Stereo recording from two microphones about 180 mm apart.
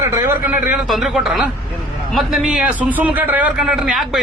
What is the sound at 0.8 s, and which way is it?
A man's voice, centre (ahead or behind).